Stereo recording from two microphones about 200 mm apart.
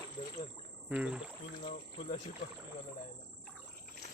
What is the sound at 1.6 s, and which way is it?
Cricket, 30° left (ahead or behind).